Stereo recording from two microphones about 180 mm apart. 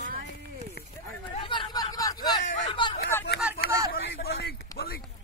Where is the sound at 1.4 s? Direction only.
25° left (ahead or behind).